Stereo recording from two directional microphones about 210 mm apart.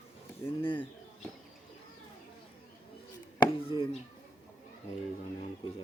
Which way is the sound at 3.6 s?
25° left (ahead or behind).